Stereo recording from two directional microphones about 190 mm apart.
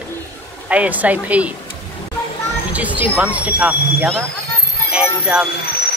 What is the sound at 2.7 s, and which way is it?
Speech, 5° right (ahead or behind).